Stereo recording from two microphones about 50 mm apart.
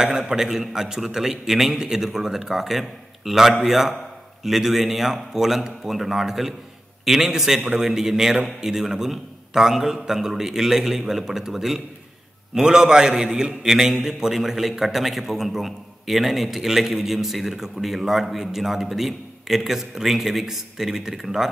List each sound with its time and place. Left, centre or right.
0.0 s a man's voice: centre